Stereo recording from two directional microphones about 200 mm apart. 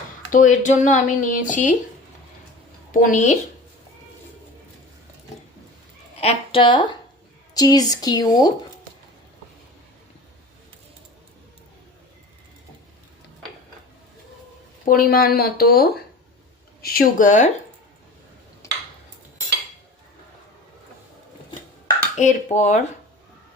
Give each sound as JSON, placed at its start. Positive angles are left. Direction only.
{"t": 0.3, "sound": "speech", "side_deg": 40}
{"t": 2.9, "sound": "speech", "side_deg": 40}
{"t": 6.1, "sound": "speech", "side_deg": 30}
{"t": 14.8, "sound": "speech", "side_deg": 45}
{"t": 18.6, "sound": "a sound", "side_deg": 15}
{"t": 22.2, "sound": "speech", "side_deg": 35}